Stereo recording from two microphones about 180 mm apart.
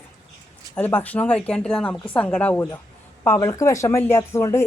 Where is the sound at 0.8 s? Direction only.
10° left (ahead or behind).